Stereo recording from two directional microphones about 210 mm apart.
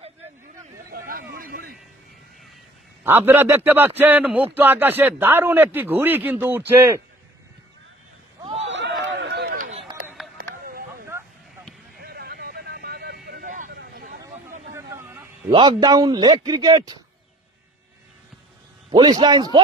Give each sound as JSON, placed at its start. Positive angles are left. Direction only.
{"t": 0.9, "sound": "a sound", "side_deg": -45}
{"t": 3.0, "sound": "a man's voice", "side_deg": -10}
{"t": 8.5, "sound": "chatter", "side_deg": -60}
{"t": 10.0, "sound": "a sound", "side_deg": 0}
{"t": 12.0, "sound": "vehicle", "side_deg": -50}
{"t": 14.7, "sound": "a man's voice", "side_deg": -10}
{"t": 18.9, "sound": "a man's voice", "side_deg": -20}